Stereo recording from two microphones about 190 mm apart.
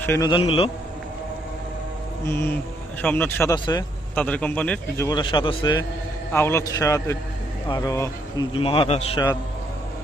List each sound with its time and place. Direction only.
0.0 s a man's voice: 15° left (ahead or behind)
2.2 s a man's voice: 10° left (ahead or behind)
4.1 s a man's voice: 5° left (ahead or behind)
5.0 s a man's voice: 25° left (ahead or behind)
6.3 s a man's voice: 15° left (ahead or behind)
8.5 s a man's voice: 30° left (ahead or behind)